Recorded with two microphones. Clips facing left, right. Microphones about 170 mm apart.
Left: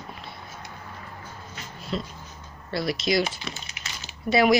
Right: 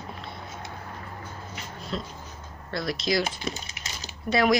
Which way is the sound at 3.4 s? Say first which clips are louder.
Right 4 dB; 40° right (ahead or behind).